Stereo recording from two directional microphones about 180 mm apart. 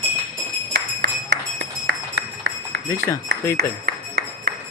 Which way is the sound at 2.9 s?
15° left (ahead or behind).